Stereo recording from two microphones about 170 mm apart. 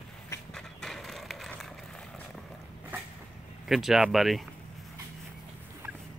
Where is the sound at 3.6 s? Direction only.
Centre (ahead or behind).